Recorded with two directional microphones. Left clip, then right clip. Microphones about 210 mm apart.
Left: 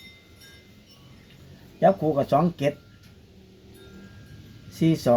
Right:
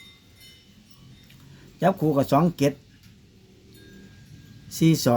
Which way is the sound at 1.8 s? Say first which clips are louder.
Left 2 dB; 50° right (ahead or behind).